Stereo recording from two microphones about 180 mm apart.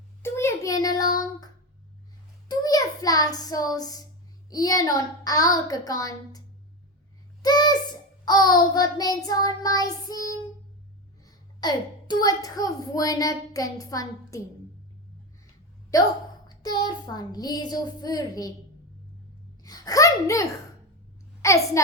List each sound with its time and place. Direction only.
0.2 s child singing: 15° left (ahead or behind)
2.5 s a child's voice: 20° left (ahead or behind)
7.4 s a sound: 25° left (ahead or behind)
8.2 s a child's voice: 20° left (ahead or behind)
16.5 s a child's voice: 25° left (ahead or behind)
19.6 s a child's voice: 20° left (ahead or behind)